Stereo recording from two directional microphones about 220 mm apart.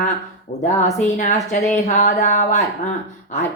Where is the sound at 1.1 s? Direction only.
35° left (ahead or behind).